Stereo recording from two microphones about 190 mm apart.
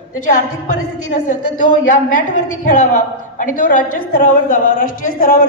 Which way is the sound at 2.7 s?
40° left (ahead or behind).